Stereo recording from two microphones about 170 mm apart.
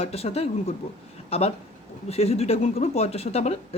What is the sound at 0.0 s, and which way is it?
Speech, 35° left (ahead or behind).